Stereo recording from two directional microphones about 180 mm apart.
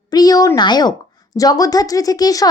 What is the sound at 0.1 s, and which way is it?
A woman's voice, 20° left (ahead or behind).